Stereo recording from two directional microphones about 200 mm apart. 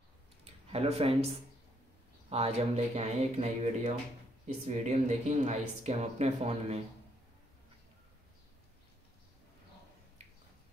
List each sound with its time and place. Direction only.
0.7 s speech: 30° right (ahead or behind)